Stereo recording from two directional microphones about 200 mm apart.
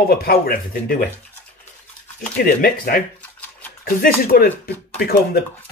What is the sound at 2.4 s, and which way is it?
Speech, 45° left (ahead or behind).